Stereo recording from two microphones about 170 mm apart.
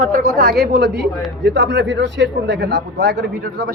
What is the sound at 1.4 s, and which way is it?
Speech, 90° right.